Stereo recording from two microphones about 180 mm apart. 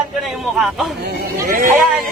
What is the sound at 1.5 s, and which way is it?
Speech, 50° right (ahead or behind).